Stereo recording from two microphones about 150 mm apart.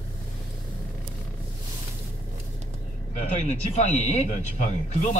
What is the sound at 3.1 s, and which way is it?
Speech, 50° left (ahead or behind).